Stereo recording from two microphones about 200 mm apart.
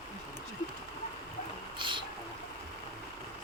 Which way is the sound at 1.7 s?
25° right (ahead or behind).